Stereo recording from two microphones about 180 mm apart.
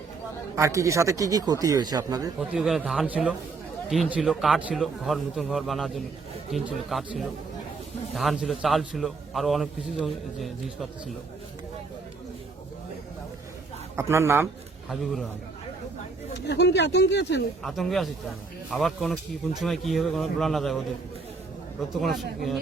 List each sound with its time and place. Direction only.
0.5 s speech: 15° right (ahead or behind)
2.4 s a man's voice: 5° right (ahead or behind)
13.9 s a man's voice: 15° right (ahead or behind)
14.8 s a man's voice: centre (ahead or behind)
16.3 s speech: 70° left (ahead or behind)
17.6 s a man's voice: centre (ahead or behind)
22.0 s a man's voice: centre (ahead or behind)